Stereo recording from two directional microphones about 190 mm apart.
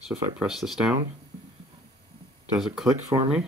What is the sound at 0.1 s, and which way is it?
Speech, 5° right (ahead or behind).